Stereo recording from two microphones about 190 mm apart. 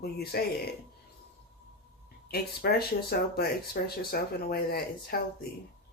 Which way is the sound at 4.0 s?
55° left (ahead or behind).